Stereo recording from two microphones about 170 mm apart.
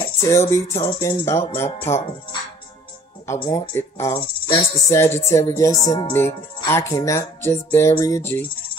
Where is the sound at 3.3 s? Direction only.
30° left (ahead or behind).